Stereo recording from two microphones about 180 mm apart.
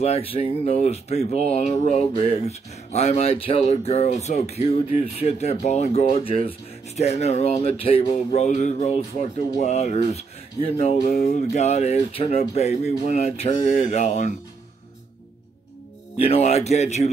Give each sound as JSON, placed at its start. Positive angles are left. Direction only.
{"t": 0.0, "sound": "speech", "side_deg": 35}
{"t": 16.2, "sound": "speech", "side_deg": 35}